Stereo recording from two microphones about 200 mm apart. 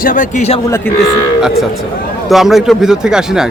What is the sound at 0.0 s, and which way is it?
Speech, 40° left (ahead or behind).